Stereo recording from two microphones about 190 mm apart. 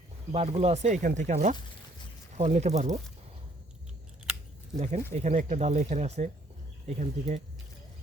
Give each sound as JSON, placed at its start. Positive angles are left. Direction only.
{"t": 0.3, "sound": "speech", "side_deg": -35}
{"t": 4.8, "sound": "speech", "side_deg": -40}